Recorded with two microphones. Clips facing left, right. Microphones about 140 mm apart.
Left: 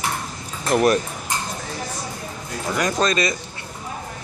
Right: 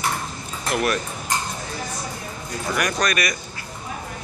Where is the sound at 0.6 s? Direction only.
40° left (ahead or behind).